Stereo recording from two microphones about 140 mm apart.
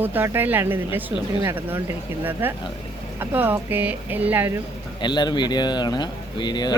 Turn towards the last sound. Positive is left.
turn(degrees=30)  # may be behind; listen again after turning